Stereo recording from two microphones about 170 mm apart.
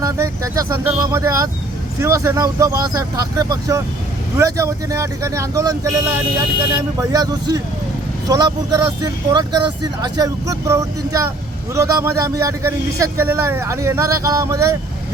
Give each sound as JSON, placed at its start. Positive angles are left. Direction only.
{"t": 0.0, "sound": "a man's voice", "side_deg": -20}